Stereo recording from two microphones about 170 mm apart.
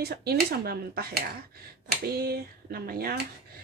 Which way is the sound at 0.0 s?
70° right (ahead or behind).